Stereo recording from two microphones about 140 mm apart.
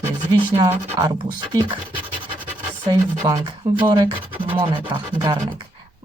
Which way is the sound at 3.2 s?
25° right (ahead or behind).